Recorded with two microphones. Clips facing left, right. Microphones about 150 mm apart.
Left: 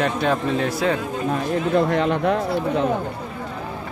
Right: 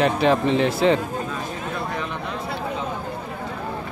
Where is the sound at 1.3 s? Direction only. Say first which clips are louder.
Left 9 dB; 60° left (ahead or behind).